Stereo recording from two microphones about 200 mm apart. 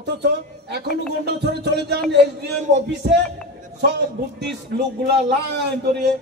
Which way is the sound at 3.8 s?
55° right (ahead or behind).